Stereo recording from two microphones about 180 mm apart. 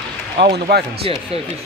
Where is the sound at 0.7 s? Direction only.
60° right (ahead or behind).